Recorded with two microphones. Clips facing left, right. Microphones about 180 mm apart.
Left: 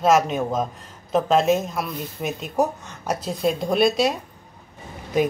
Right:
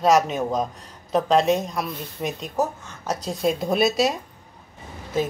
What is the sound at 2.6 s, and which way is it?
Speech, 15° left (ahead or behind).